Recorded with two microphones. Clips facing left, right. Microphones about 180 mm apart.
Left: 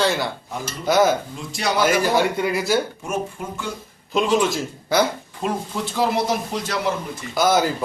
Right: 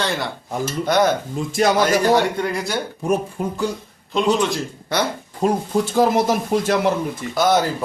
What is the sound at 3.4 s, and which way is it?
Speech, 40° right (ahead or behind).